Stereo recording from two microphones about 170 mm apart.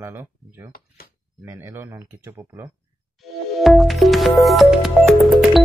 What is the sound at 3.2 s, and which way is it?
Music, centre (ahead or behind).